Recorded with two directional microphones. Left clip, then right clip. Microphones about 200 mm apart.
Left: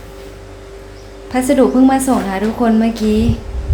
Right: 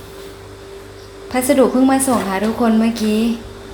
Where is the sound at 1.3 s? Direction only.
Centre (ahead or behind).